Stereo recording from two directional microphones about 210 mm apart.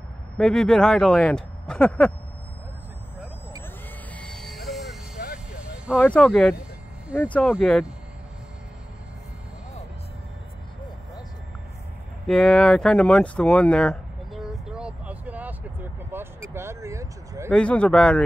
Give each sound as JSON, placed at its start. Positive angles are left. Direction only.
{"t": 0.4, "sound": "speech", "side_deg": 0}
{"t": 4.1, "sound": "train", "side_deg": 5}
{"t": 6.0, "sound": "speech", "side_deg": 5}
{"t": 12.3, "sound": "a sound", "side_deg": 5}
{"t": 17.5, "sound": "speech", "side_deg": 5}